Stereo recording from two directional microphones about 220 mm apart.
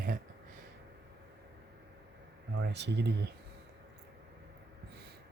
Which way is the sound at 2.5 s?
50° right (ahead or behind).